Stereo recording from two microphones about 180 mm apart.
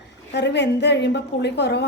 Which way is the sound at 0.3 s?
75° left (ahead or behind).